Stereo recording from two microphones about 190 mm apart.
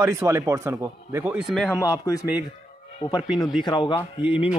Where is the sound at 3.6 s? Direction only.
25° left (ahead or behind).